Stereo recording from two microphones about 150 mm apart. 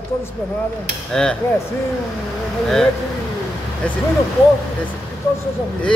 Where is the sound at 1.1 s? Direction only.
5° left (ahead or behind).